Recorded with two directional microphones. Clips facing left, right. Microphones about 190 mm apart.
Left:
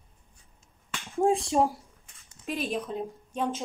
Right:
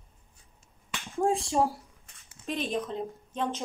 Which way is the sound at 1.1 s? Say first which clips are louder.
Left 2 dB; 20° left (ahead or behind).